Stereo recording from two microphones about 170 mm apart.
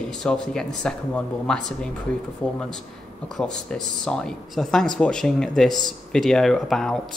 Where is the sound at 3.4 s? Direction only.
5° left (ahead or behind).